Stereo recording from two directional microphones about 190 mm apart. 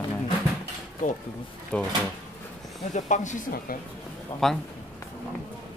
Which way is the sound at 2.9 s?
40° left (ahead or behind).